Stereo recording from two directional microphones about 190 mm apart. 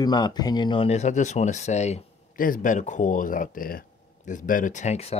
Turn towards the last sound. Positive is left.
turn(degrees=35)  # may be behind; listen again after turning